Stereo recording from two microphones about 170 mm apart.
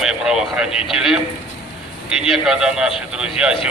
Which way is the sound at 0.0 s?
5° right (ahead or behind).